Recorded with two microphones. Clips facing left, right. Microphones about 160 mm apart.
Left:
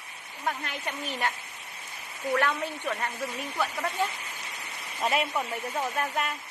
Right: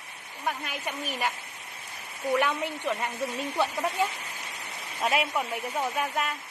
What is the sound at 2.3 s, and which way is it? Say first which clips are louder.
A woman's voice: right 1 dB; 15° right (ahead or behind).